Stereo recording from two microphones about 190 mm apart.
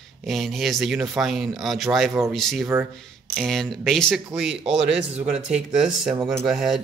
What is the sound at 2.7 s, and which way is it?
Speech, 10° right (ahead or behind).